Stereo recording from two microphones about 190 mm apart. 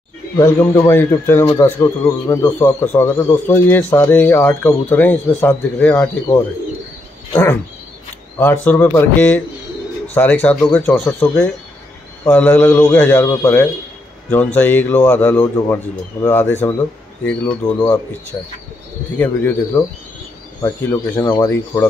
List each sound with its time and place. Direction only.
0.4 s a man's voice: 15° left (ahead or behind)
8.4 s a man's voice: 10° left (ahead or behind)
18.3 s speech: 25° left (ahead or behind)
19.1 s a man's voice: 10° left (ahead or behind)
21.2 s a man's voice: 15° left (ahead or behind)